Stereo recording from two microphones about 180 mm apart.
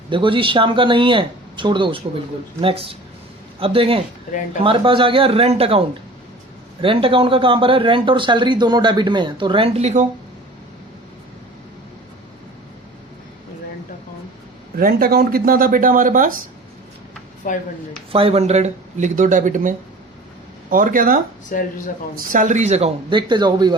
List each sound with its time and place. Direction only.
0.1 s speech: 30° right (ahead or behind)
6.8 s speech: 30° right (ahead or behind)
14.8 s speech: 55° right (ahead or behind)
17.4 s speech: 50° left (ahead or behind)
18.1 s speech: 30° right (ahead or behind); by 21.2 s 50° right (ahead or behind)
21.5 s speech: 50° left (ahead or behind)
22.3 s speech: 45° right (ahead or behind); by 23.7 s 25° right (ahead or behind)